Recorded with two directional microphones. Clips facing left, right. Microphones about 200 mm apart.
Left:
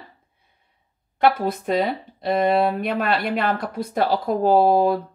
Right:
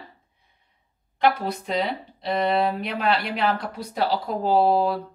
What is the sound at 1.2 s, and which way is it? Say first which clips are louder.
Speech: left 3 dB; 50° left (ahead or behind).